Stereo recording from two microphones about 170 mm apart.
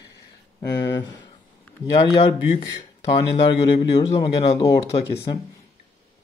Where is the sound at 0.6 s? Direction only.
20° left (ahead or behind).